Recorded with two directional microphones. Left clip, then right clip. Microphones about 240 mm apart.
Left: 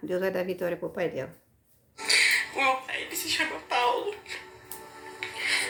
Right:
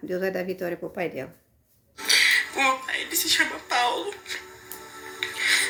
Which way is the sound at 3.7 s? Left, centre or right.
Right.